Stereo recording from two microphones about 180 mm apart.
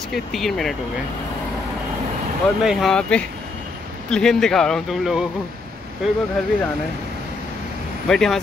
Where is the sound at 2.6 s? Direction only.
5° left (ahead or behind).